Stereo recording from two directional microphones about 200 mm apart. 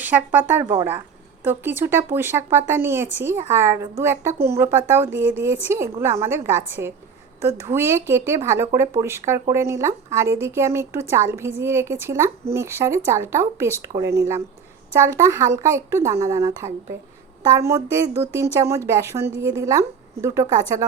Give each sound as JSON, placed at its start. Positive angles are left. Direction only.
{"t": 0.0, "sound": "speech", "side_deg": -10}